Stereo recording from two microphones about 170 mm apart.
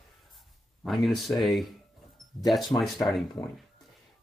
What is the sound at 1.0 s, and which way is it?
Speech, centre (ahead or behind).